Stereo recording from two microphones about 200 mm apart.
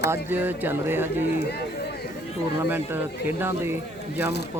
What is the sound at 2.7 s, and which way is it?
Speech, 10° right (ahead or behind).